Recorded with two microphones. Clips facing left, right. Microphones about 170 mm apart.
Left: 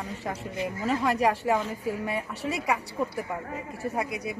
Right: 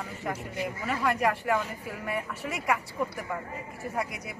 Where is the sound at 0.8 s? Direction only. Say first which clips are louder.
Left 3 dB; 30° left (ahead or behind).